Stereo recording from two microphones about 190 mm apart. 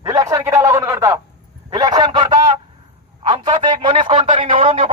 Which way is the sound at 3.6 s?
25° right (ahead or behind).